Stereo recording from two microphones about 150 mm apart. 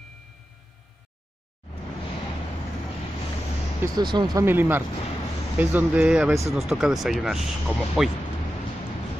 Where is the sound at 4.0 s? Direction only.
30° right (ahead or behind).